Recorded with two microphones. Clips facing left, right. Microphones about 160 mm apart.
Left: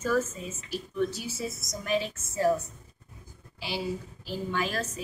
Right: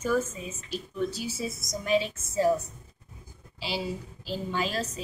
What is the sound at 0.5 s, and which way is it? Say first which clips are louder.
A woman's voice: left 3 dB; 25° right (ahead or behind).